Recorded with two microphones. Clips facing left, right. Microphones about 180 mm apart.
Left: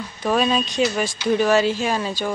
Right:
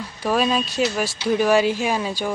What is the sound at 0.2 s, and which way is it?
Speech, 5° right (ahead or behind).